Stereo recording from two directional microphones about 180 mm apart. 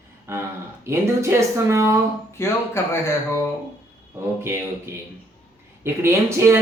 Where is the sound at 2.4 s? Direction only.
15° left (ahead or behind).